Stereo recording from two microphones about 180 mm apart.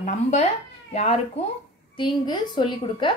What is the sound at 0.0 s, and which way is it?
Speech, 40° left (ahead or behind).